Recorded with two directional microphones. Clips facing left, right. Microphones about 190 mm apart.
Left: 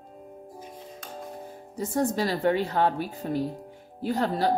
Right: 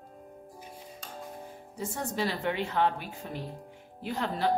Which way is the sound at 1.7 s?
40° left (ahead or behind).